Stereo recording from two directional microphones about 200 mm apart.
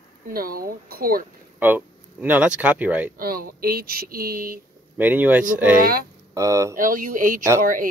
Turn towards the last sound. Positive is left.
turn(degrees=-40)  # may be behind; listen again after turning